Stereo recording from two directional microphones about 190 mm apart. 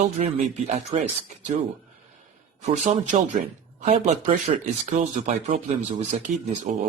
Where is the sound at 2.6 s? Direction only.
35° right (ahead or behind).